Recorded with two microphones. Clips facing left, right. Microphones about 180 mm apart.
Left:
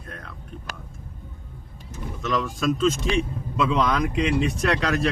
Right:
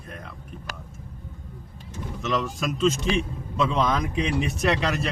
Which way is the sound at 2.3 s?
Centre (ahead or behind).